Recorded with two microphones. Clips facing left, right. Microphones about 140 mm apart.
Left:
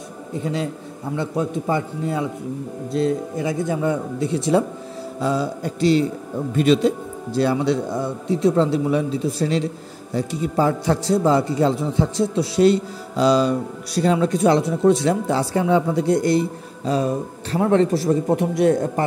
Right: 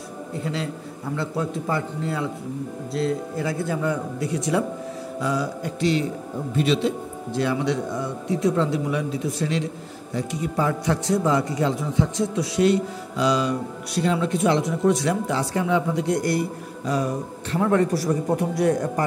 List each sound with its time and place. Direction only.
0.4 s a man's voice: 20° left (ahead or behind)
6.5 s a man's voice: 45° left (ahead or behind)
7.3 s a man's voice: 35° left (ahead or behind)